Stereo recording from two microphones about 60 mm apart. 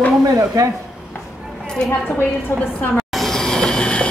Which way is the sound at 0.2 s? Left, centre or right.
Right.